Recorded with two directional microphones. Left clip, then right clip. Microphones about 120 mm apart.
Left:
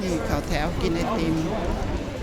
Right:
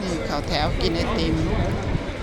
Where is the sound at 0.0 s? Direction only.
50° left (ahead or behind).